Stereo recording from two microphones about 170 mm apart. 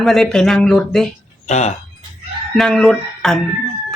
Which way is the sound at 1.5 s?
40° left (ahead or behind).